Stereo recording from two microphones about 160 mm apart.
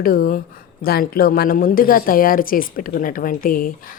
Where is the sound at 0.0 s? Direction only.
65° left (ahead or behind).